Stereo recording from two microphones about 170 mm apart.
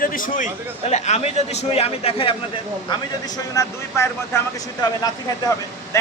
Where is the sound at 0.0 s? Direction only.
55° left (ahead or behind).